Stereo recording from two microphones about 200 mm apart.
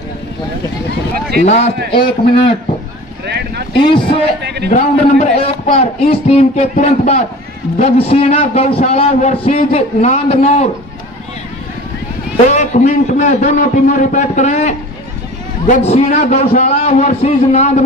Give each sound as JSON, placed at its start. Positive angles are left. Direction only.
{"t": 1.4, "sound": "a man's voice", "side_deg": 35}
{"t": 3.3, "sound": "speech", "side_deg": -55}
{"t": 3.8, "sound": "a man's voice", "side_deg": 25}
{"t": 4.4, "sound": "speech", "side_deg": -55}
{"t": 4.6, "sound": "a man's voice", "side_deg": 40}
{"t": 12.4, "sound": "a man's voice", "side_deg": 35}